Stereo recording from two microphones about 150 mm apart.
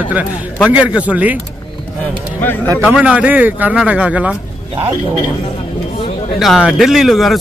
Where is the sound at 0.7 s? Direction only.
10° right (ahead or behind).